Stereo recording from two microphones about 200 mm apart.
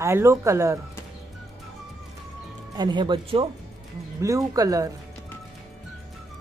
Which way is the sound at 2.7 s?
20° right (ahead or behind).